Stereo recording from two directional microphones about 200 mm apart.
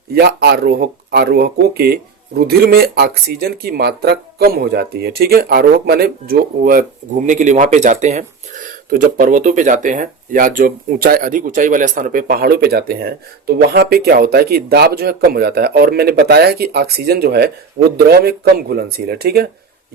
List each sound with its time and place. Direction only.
0.1 s speech: 55° right (ahead or behind)